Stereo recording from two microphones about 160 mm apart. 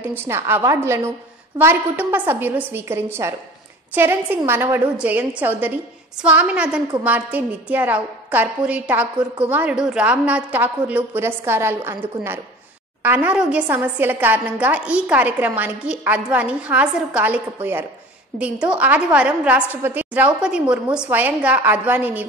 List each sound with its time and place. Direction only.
0.2 s a woman's voice: 15° right (ahead or behind)